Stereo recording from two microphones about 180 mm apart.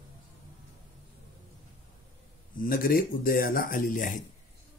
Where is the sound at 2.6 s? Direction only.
50° left (ahead or behind).